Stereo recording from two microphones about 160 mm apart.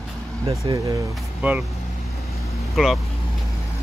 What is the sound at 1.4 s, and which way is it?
Speech, 10° right (ahead or behind).